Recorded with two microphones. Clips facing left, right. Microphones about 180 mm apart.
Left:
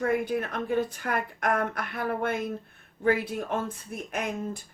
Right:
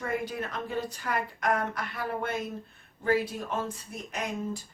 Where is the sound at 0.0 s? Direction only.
55° left (ahead or behind).